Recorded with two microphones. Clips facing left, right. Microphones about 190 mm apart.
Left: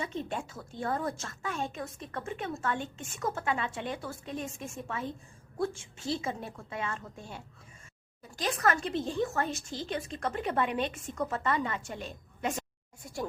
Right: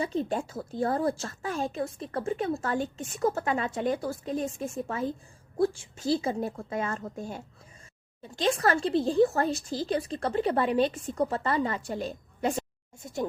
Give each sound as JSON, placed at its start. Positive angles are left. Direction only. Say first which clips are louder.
{"t": 0.0, "sound": "a woman's voice", "louder": "right 6 dB", "side_deg": -35}
{"t": 8.2, "sound": "a woman's voice", "louder": "right 4 dB", "side_deg": -30}